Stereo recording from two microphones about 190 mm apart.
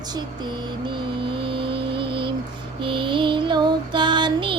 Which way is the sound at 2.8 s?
25° right (ahead or behind).